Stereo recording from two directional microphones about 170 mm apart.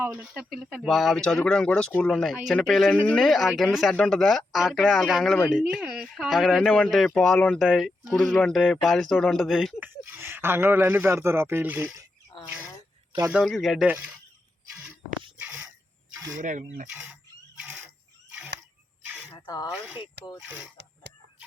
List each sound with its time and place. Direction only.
0.0 s speech: 10° right (ahead or behind)
9.9 s speech: 15° right (ahead or behind)
13.3 s speech: centre (ahead or behind)
13.8 s speech: 10° right (ahead or behind)
15.4 s a sound: 10° right (ahead or behind)
16.1 s a sound: 20° right (ahead or behind)
16.4 s speech: 50° right (ahead or behind)
16.9 s speech: 5° right (ahead or behind)
18.3 s single-lens reflex camera: 10° right (ahead or behind)
19.0 s a sound: 10° right (ahead or behind)
19.4 s a sound: 25° left (ahead or behind)
19.7 s speech: 10° right (ahead or behind)